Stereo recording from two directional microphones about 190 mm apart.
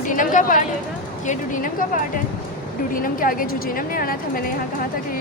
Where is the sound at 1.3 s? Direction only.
45° left (ahead or behind).